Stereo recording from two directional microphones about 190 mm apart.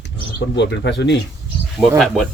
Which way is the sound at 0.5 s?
65° left (ahead or behind).